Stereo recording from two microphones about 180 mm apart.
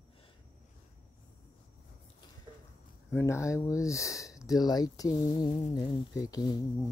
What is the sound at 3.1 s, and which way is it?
Speech, 15° left (ahead or behind).